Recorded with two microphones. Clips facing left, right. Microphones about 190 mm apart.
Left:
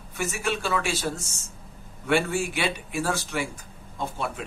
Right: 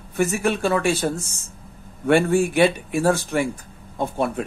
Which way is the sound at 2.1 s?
55° right (ahead or behind).